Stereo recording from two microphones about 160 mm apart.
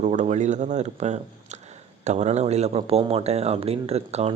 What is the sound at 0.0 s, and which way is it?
Speech, 45° right (ahead or behind).